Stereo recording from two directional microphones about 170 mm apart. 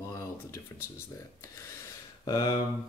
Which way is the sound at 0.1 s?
20° left (ahead or behind).